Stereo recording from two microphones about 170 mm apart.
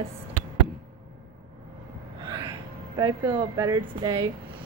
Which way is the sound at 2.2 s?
25° right (ahead or behind).